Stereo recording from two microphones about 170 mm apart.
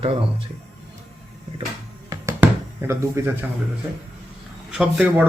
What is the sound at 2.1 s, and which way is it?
Music, 15° right (ahead or behind).